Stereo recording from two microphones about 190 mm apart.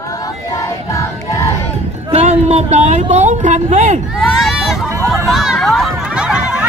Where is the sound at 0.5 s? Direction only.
15° left (ahead or behind).